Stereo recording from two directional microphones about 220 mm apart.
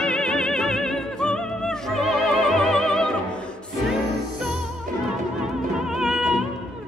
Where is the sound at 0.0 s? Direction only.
5° left (ahead or behind).